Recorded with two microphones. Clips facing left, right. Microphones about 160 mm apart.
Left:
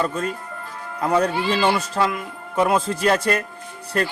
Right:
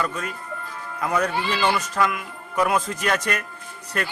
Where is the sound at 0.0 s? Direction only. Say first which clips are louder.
Left 4 dB; 30° left (ahead or behind).